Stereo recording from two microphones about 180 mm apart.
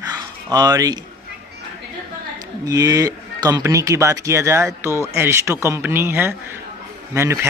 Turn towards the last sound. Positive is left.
turn(degrees=-15)  # may be behind; listen again after turning